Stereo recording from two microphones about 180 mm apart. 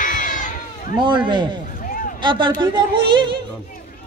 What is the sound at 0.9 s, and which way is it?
Speech, 25° right (ahead or behind).